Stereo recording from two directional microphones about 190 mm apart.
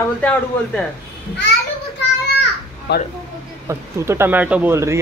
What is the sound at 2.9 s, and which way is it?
Speech, 60° left (ahead or behind).